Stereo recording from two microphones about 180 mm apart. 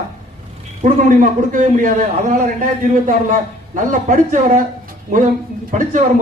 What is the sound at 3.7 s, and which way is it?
Speech, 45° right (ahead or behind).